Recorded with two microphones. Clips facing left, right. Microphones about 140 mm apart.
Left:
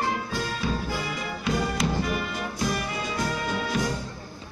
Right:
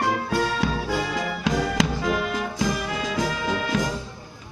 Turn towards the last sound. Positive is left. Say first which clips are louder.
# right 3 dB
turn(degrees=-90)